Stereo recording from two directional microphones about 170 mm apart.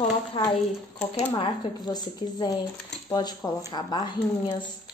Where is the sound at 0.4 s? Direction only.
30° left (ahead or behind).